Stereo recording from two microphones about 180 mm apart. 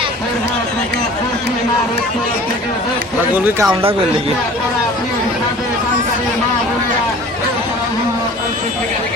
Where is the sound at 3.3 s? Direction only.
10° right (ahead or behind).